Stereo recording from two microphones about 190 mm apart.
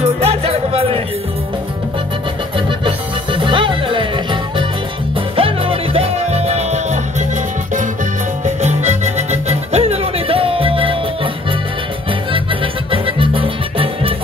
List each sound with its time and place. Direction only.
0.0 s music: 30° right (ahead or behind)
2.5 s music: 25° right (ahead or behind)
8.5 s music: 35° right (ahead or behind)
12.9 s music: 30° right (ahead or behind)